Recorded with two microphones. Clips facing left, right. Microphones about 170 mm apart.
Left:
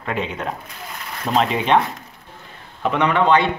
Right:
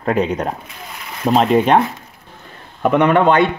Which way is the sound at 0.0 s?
40° right (ahead or behind).